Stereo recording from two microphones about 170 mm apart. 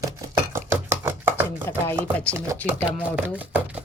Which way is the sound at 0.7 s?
15° right (ahead or behind).